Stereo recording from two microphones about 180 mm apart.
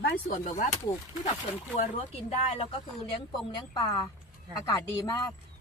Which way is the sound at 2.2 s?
35° left (ahead or behind).